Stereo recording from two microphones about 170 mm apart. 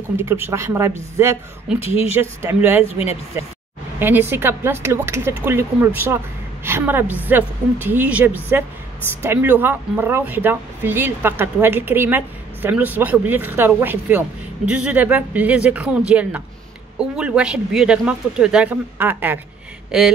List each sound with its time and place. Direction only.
0.2 s speech: 15° right (ahead or behind)
1.8 s speech: 35° left (ahead or behind)
2.1 s speech: 10° right (ahead or behind)
4.0 s a woman's voice: 10° right (ahead or behind)